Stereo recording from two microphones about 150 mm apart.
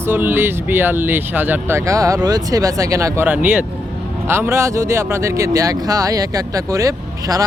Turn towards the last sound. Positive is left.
turn(degrees=-20)  # may be behind; listen again after turning